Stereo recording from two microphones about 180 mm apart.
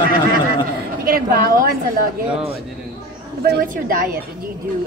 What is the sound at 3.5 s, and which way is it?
A woman's voice, 50° right (ahead or behind).